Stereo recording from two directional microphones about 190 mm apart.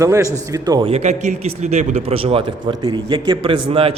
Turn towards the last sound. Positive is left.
turn(degrees=-30)  # may be behind; listen again after turning